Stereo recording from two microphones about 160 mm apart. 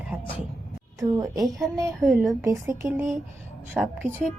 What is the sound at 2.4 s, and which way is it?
Speech, 15° right (ahead or behind).